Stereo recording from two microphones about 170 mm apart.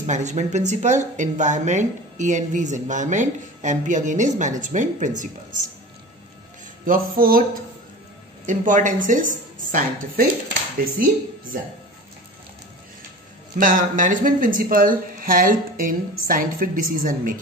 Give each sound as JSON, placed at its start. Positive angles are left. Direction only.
{"t": 0.0, "sound": "speech", "side_deg": -45}
{"t": 6.9, "sound": "speech", "side_deg": -55}
{"t": 8.5, "sound": "speech", "side_deg": -50}
{"t": 13.6, "sound": "speech", "side_deg": -50}